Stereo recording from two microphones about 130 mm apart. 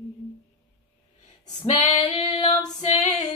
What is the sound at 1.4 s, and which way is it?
Female singing, 60° left (ahead or behind).